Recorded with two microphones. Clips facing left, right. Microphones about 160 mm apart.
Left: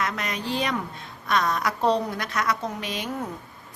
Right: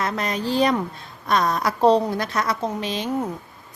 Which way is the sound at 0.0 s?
35° right (ahead or behind).